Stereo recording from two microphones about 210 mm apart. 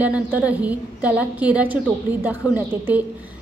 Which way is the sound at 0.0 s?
5° right (ahead or behind).